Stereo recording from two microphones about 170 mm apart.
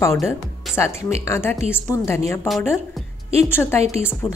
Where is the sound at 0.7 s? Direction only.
Centre (ahead or behind).